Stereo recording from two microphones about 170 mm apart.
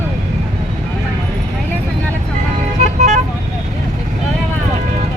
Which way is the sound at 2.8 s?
45° right (ahead or behind).